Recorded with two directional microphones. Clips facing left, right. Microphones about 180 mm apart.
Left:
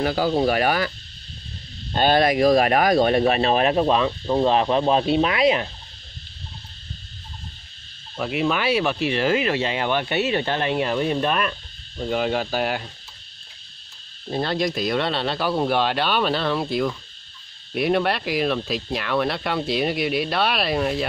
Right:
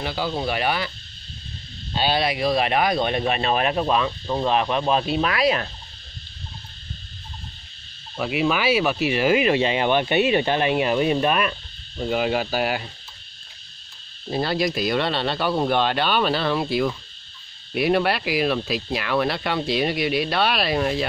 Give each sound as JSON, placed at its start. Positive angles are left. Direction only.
{"t": 0.0, "sound": "speech", "side_deg": 45}
{"t": 2.0, "sound": "speech", "side_deg": 50}
{"t": 8.2, "sound": "speech", "side_deg": -5}
{"t": 14.3, "sound": "speech", "side_deg": -5}